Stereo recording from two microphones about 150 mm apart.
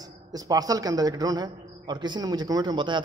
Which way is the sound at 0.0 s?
25° right (ahead or behind).